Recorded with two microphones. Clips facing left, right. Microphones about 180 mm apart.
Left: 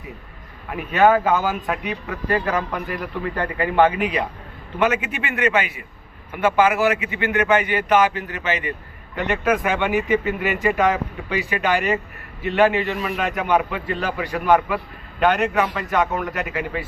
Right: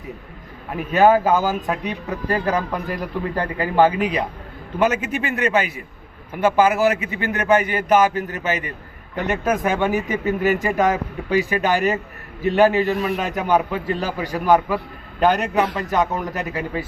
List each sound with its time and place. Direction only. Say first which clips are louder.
0.8 s speech: right 1 dB; 40° right (ahead or behind)